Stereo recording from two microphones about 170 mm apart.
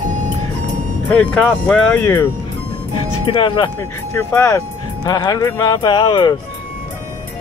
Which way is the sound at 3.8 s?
15° left (ahead or behind).